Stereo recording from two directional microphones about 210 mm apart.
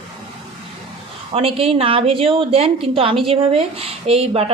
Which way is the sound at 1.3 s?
25° right (ahead or behind).